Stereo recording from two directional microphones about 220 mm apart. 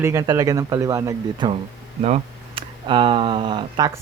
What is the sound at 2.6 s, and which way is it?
Speech, 20° right (ahead or behind).